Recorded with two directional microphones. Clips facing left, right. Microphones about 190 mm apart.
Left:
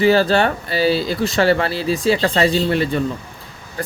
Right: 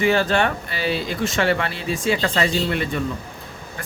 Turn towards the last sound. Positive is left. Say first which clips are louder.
# left 9 dB
turn(degrees=35)  # may be behind; listen again after turning